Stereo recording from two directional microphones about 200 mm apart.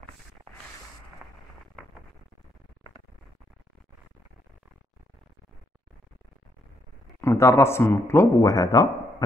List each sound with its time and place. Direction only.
7.2 s speech: 15° left (ahead or behind)